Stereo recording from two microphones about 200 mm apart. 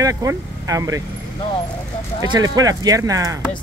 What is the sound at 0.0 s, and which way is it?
Speech, 15° right (ahead or behind).